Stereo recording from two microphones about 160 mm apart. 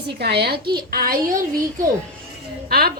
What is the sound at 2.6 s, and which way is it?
Speech, 70° right (ahead or behind).